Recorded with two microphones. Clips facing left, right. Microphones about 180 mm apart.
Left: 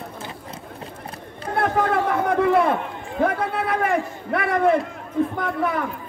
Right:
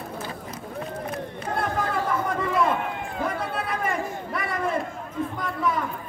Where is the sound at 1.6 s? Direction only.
65° left (ahead or behind).